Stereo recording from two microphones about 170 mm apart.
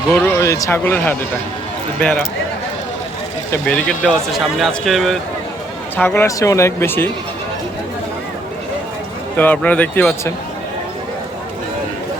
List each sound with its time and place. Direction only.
0.1 s speech: 5° left (ahead or behind)
0.3 s speech: 20° left (ahead or behind)
3.5 s speech: 5° left (ahead or behind)
6.0 s speech: 10° left (ahead or behind)
9.4 s speech: 10° left (ahead or behind)